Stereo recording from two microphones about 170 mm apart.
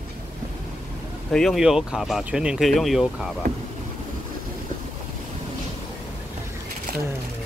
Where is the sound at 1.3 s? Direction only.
Centre (ahead or behind).